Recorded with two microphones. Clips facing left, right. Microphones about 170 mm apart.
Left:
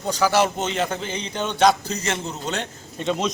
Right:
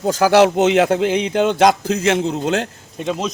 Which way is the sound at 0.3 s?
70° right (ahead or behind).